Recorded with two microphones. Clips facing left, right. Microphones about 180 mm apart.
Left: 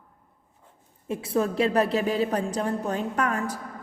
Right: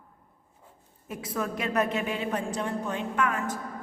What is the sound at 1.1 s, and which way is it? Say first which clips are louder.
A woman's voice: left 7 dB; 30° left (ahead or behind).